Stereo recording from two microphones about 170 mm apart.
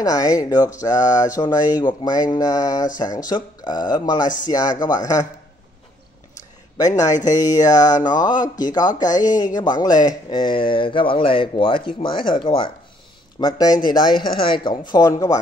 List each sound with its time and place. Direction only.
0.0 s speech: 20° left (ahead or behind)
6.8 s speech: 20° left (ahead or behind)
7.1 s speech: 45° left (ahead or behind)
7.6 s speech: 20° left (ahead or behind)